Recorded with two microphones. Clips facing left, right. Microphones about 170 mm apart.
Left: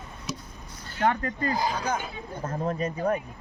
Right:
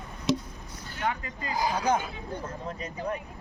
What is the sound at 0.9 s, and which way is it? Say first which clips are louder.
Speech: left 6 dB; 60° left (ahead or behind).